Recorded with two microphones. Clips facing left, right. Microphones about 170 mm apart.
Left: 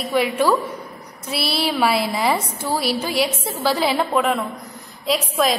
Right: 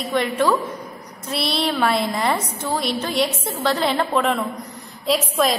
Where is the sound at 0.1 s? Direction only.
10° left (ahead or behind).